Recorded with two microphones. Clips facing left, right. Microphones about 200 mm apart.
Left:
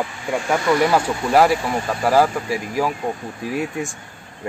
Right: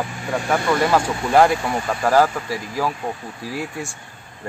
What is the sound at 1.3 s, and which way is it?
Speech, 5° left (ahead or behind).